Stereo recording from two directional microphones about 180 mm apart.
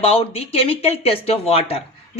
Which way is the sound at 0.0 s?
35° left (ahead or behind).